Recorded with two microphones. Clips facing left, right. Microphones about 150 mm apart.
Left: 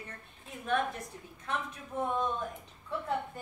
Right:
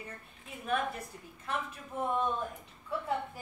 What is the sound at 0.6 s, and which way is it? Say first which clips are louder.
Speech: left 1 dB; 5° right (ahead or behind).